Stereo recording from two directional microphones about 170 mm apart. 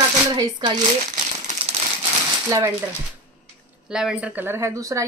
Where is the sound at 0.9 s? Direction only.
40° right (ahead or behind).